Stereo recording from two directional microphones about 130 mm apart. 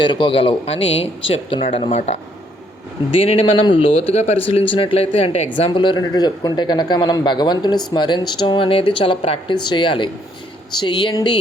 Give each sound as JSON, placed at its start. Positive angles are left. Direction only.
{"t": 0.0, "sound": "speech", "side_deg": 40}
{"t": 4.7, "sound": "speech", "side_deg": 45}